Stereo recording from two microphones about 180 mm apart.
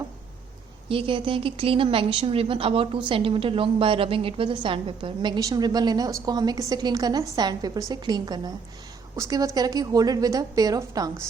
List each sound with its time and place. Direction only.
0.9 s a woman's voice: 30° right (ahead or behind)